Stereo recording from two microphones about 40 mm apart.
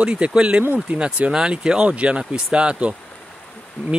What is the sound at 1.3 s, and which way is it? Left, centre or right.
Speech, centre.